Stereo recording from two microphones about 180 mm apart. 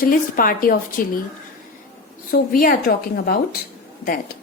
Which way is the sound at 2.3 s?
55° left (ahead or behind).